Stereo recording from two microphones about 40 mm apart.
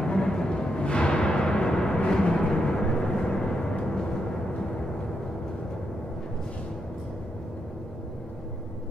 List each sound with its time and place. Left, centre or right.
0.0 s music: centre
2.0 s vehicle: centre